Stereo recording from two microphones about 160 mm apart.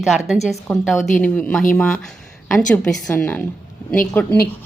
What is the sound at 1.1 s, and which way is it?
A woman's voice, 5° left (ahead or behind).